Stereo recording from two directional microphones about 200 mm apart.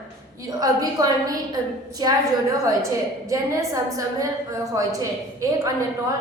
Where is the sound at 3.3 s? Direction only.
15° right (ahead or behind).